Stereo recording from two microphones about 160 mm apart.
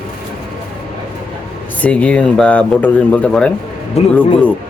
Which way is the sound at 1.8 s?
10° left (ahead or behind).